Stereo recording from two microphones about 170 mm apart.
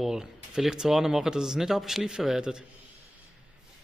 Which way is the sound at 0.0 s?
5° right (ahead or behind).